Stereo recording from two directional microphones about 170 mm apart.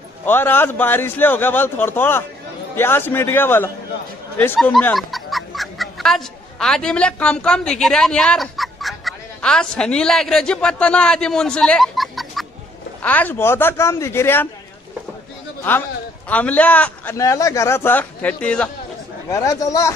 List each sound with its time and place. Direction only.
0.2 s speech: 10° left (ahead or behind)
16.3 s speech: 10° left (ahead or behind)
19.3 s speech: 20° left (ahead or behind)